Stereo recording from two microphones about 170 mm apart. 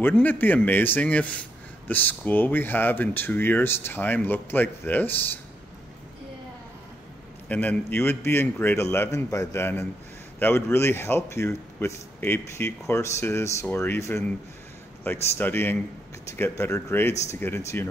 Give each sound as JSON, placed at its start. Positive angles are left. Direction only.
{"t": 0.0, "sound": "speech", "side_deg": 10}
{"t": 7.4, "sound": "speech", "side_deg": 10}
{"t": 15.3, "sound": "speech", "side_deg": 15}